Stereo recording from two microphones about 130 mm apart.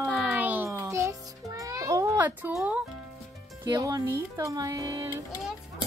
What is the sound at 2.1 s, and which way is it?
Speech, 15° right (ahead or behind).